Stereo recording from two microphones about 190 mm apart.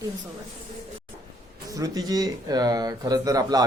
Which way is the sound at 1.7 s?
20° right (ahead or behind).